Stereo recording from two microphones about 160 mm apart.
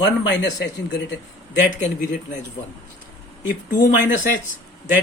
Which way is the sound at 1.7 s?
50° left (ahead or behind).